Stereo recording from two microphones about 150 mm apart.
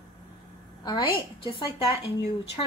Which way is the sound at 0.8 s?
30° left (ahead or behind).